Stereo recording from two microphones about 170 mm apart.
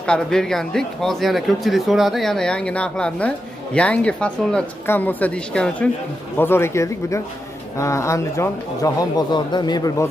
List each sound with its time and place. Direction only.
0.0 s speech: 5° left (ahead or behind); by 10.0 s 20° left (ahead or behind)